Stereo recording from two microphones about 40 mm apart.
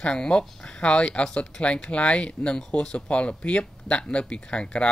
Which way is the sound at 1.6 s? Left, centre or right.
Left.